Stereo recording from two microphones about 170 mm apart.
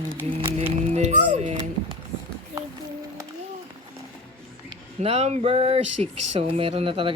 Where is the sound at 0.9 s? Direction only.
40° right (ahead or behind).